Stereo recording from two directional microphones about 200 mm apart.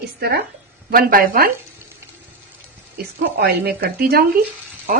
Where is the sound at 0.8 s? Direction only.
45° right (ahead or behind).